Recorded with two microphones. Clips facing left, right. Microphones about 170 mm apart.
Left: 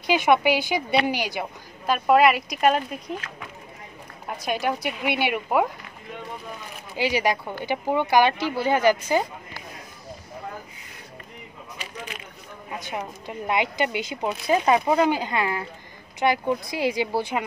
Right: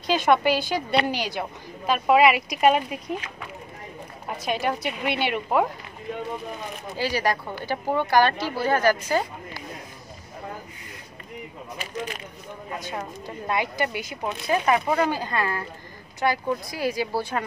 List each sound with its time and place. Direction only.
0.0 s a woman's voice: 10° left (ahead or behind); by 3.3 s 5° right (ahead or behind)
4.3 s speech: centre (ahead or behind)
7.0 s a woman's voice: 15° left (ahead or behind)
13.5 s a woman's voice: 20° left (ahead or behind)